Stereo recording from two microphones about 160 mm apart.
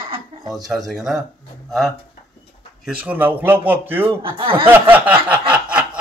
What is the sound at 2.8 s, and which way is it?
A man's voice, 5° right (ahead or behind).